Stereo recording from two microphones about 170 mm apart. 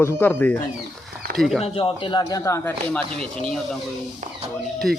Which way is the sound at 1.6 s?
30° left (ahead or behind).